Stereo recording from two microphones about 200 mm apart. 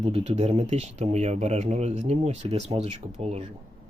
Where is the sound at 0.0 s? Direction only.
30° right (ahead or behind).